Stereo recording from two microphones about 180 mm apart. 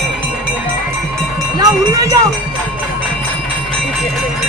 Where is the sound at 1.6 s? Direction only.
15° right (ahead or behind).